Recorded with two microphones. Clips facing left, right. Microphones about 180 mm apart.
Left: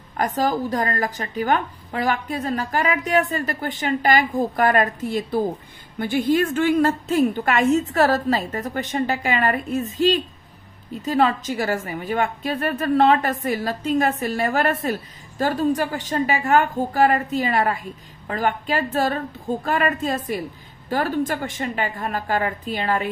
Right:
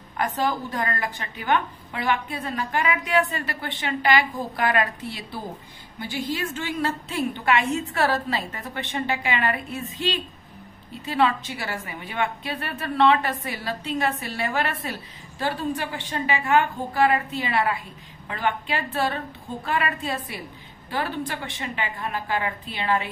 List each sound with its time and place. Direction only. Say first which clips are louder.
0.2 s a woman's voice: left 4 dB; 40° left (ahead or behind)